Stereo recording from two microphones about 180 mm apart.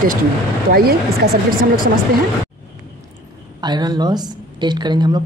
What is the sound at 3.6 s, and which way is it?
A woman's voice, 25° right (ahead or behind).